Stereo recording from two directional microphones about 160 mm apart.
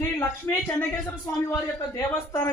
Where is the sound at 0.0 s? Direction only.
10° left (ahead or behind).